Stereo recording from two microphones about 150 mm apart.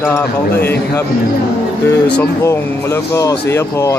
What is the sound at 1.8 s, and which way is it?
Speech, 15° left (ahead or behind).